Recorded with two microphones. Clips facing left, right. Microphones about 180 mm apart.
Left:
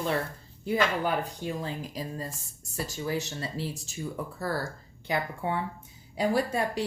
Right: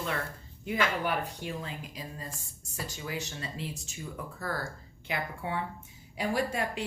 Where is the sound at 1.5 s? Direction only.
35° left (ahead or behind).